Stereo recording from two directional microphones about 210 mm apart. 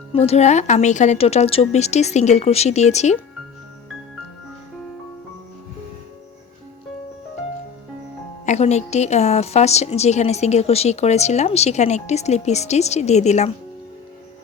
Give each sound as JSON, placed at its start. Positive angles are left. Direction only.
{"t": 0.1, "sound": "a woman's voice", "side_deg": 30}
{"t": 8.4, "sound": "a woman's voice", "side_deg": 30}